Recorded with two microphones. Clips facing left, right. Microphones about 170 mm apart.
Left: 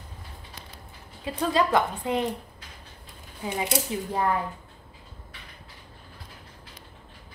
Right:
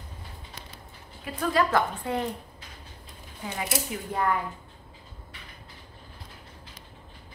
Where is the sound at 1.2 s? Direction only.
25° left (ahead or behind).